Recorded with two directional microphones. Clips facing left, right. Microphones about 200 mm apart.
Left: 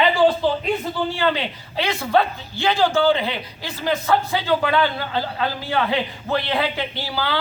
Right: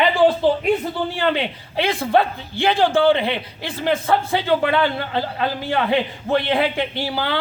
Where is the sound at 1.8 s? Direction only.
30° right (ahead or behind).